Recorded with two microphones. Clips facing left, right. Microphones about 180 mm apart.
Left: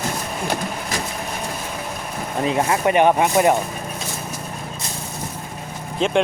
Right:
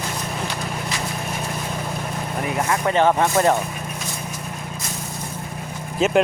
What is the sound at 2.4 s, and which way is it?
Speech, 25° left (ahead or behind).